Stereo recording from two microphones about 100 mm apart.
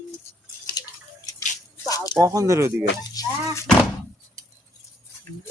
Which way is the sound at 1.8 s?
35° left (ahead or behind).